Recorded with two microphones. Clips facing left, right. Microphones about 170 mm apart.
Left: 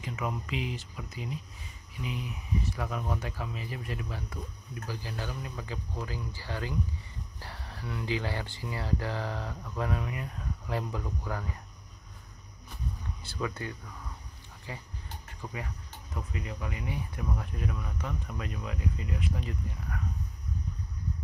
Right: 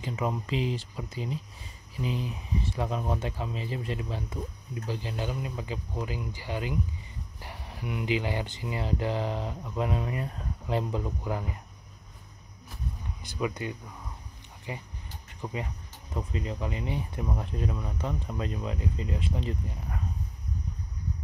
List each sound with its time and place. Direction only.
0.0 s speech: 30° right (ahead or behind)
10.0 s speech: 35° right (ahead or behind)
13.2 s speech: 15° right (ahead or behind)